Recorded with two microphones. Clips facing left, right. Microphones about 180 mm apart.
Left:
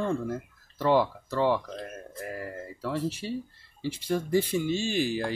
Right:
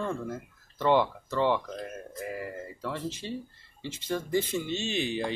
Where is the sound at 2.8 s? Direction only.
10° left (ahead or behind).